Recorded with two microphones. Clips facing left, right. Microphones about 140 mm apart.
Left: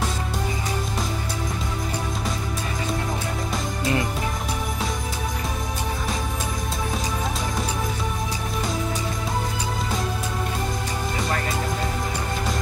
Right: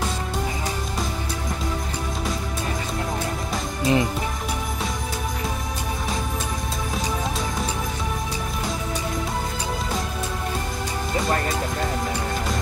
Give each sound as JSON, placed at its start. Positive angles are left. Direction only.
{"t": 3.8, "sound": "music", "side_deg": -20}